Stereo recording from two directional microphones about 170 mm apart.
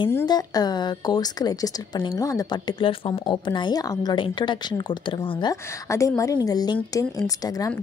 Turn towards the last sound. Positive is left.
turn(degrees=20)  # may be behind; listen again after turning